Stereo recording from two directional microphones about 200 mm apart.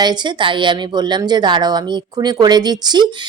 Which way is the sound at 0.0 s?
20° right (ahead or behind).